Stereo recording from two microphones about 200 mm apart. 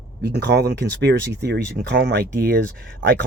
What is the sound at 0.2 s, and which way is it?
Speech, 55° right (ahead or behind).